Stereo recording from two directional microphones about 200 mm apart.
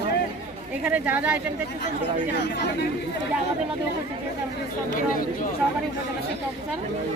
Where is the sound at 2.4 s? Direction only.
55° left (ahead or behind).